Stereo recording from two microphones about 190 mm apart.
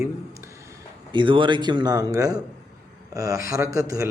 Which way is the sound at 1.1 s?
25° right (ahead or behind).